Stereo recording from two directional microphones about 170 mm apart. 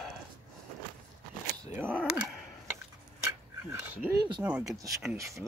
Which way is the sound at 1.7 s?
10° right (ahead or behind).